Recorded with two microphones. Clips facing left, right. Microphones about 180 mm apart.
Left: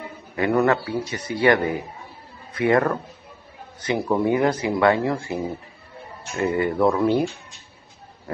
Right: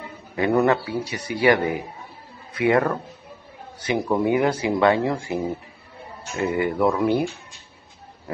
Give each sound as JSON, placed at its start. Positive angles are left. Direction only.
{"t": 0.4, "sound": "a man's voice", "side_deg": -20}